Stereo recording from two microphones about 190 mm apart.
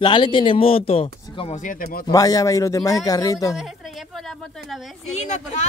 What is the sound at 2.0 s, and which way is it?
A man's voice, 20° left (ahead or behind).